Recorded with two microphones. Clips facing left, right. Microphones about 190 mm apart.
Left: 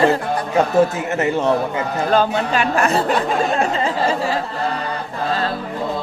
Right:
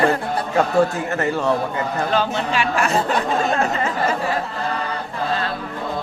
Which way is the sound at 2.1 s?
45° left (ahead or behind).